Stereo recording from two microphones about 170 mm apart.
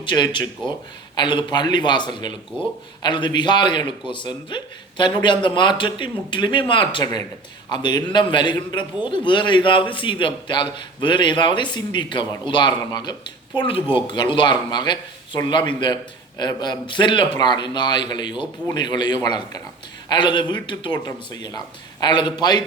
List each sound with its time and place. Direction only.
0.0 s a man's voice: 25° left (ahead or behind)